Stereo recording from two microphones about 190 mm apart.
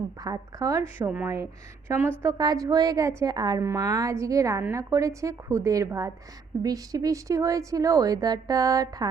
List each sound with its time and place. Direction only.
0.2 s a woman's voice: 20° right (ahead or behind)